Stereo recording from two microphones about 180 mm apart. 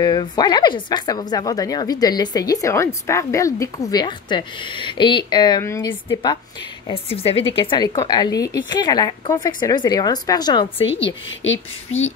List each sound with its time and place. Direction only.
0.0 s a woman's voice: 25° left (ahead or behind)
6.9 s a woman's voice: 35° left (ahead or behind)
11.1 s a woman's voice: 90° left